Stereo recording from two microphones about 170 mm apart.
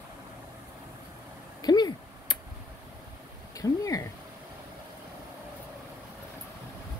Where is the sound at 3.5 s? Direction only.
20° left (ahead or behind).